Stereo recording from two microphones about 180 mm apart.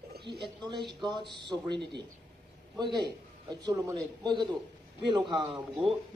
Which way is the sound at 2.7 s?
25° right (ahead or behind).